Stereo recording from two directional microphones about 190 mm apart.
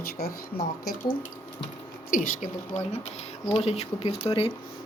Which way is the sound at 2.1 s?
45° left (ahead or behind).